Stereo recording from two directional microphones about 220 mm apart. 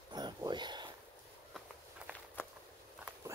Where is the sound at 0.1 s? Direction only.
20° right (ahead or behind).